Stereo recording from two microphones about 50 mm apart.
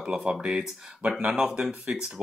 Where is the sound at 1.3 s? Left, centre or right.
Centre.